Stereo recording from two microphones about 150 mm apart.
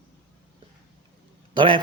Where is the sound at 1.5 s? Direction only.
35° right (ahead or behind).